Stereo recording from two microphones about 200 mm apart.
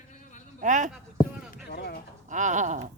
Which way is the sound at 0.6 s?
40° right (ahead or behind).